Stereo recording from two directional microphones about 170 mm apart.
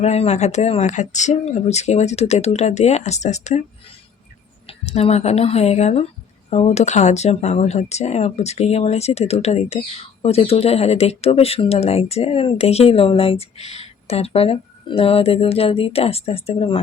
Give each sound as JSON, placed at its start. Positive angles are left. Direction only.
{"t": 0.0, "sound": "speech", "side_deg": 40}
{"t": 4.6, "sound": "speech", "side_deg": 35}